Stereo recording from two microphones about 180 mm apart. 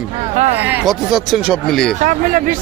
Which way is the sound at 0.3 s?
40° right (ahead or behind).